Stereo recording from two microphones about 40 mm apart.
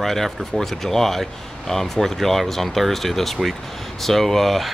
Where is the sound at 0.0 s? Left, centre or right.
Centre.